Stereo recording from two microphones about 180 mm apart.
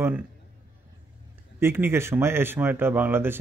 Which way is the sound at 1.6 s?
15° right (ahead or behind).